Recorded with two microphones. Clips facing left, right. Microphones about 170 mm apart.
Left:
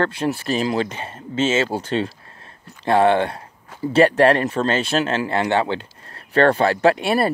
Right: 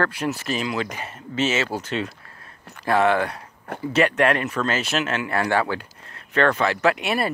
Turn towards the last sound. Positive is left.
turn(degrees=35)  # may be behind; listen again after turning